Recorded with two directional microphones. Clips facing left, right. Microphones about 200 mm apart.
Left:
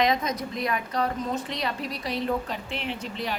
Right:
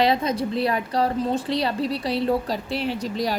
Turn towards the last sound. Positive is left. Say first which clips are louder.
# right 7 dB
turn(degrees=-40)  # may be behind; listen again after turning